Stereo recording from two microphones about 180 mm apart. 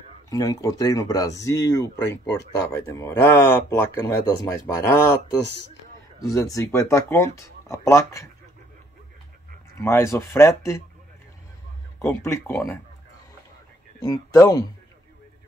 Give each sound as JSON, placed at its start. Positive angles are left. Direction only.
{"t": 0.3, "sound": "speech", "side_deg": 20}
{"t": 9.8, "sound": "speech", "side_deg": 15}
{"t": 12.0, "sound": "speech", "side_deg": 15}
{"t": 13.9, "sound": "speech", "side_deg": 20}